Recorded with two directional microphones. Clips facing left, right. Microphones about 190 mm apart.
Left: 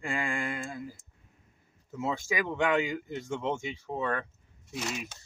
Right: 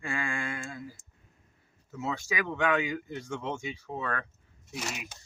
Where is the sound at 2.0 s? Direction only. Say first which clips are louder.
Left 1 dB; 20° left (ahead or behind).